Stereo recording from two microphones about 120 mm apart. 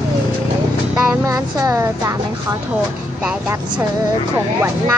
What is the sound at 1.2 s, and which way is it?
A woman's voice, 30° right (ahead or behind).